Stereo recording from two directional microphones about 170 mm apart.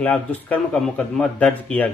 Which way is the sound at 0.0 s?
10° left (ahead or behind).